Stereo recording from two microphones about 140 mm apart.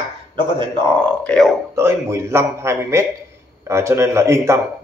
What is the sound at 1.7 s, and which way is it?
A man's voice, 20° right (ahead or behind).